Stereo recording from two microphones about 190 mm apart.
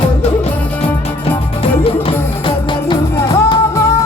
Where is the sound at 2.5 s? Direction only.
25° left (ahead or behind).